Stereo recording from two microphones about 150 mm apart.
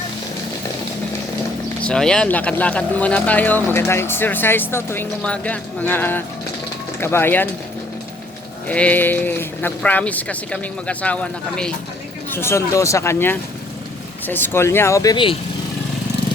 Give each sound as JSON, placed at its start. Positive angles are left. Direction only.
{"t": 1.8, "sound": "speech", "side_deg": 5}
{"t": 8.6, "sound": "speech", "side_deg": 10}